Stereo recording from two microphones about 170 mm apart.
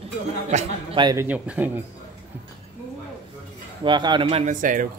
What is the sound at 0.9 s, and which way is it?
Speech, 25° right (ahead or behind).